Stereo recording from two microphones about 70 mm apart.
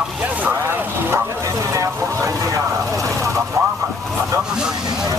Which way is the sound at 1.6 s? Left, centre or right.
Right.